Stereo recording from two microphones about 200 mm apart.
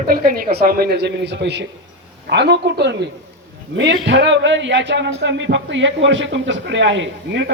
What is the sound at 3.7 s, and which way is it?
A man's voice, 70° right (ahead or behind).